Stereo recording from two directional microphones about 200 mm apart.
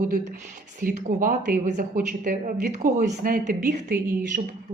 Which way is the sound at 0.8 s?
40° right (ahead or behind).